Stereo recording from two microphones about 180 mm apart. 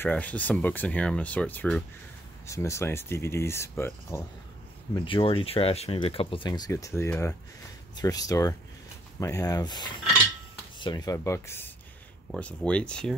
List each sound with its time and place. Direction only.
0.0 s speech: 10° left (ahead or behind)
2.4 s speech: 15° left (ahead or behind)
4.9 s speech: 30° left (ahead or behind)
6.7 s speech: 15° left (ahead or behind)